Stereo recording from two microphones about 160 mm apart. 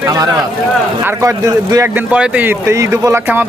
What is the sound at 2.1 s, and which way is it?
Speech, 10° right (ahead or behind).